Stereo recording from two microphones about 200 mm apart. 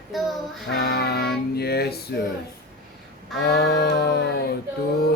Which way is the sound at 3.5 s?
55° left (ahead or behind).